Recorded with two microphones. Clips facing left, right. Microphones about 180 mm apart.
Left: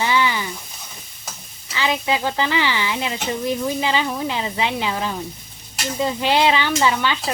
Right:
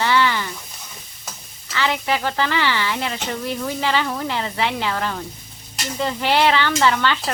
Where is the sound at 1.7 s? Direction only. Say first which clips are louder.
Even; 15° left (ahead or behind).